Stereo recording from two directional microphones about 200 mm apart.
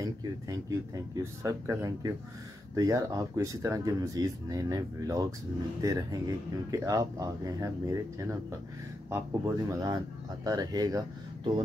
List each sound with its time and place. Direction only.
0.0 s speech: 15° right (ahead or behind)